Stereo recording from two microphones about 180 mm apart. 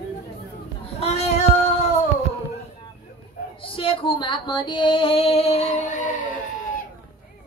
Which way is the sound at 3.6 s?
30° left (ahead or behind).